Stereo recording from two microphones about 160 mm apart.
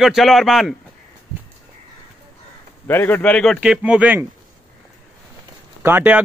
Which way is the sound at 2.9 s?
15° left (ahead or behind).